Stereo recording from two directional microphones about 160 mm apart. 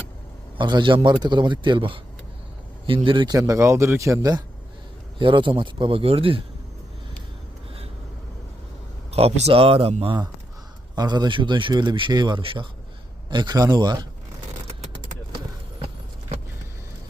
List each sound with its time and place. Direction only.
0.5 s speech: 30° right (ahead or behind)
9.1 s speech: 40° right (ahead or behind)